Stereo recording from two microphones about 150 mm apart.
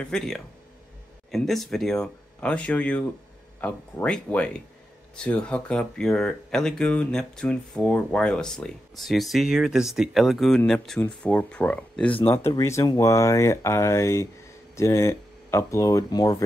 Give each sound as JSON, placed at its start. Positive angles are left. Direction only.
{"t": 0.0, "sound": "speech", "side_deg": 5}